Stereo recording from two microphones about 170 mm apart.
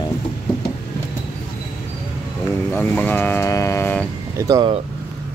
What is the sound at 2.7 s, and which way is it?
Speech, 10° left (ahead or behind).